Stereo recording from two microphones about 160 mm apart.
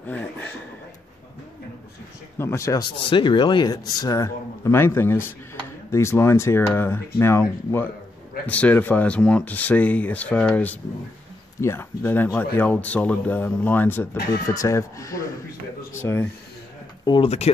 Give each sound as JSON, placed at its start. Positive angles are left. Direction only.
{"t": 0.0, "sound": "a sound", "side_deg": 10}
{"t": 2.3, "sound": "speech", "side_deg": 15}
{"t": 3.1, "sound": "speech", "side_deg": 30}
{"t": 17.0, "sound": "speech", "side_deg": 30}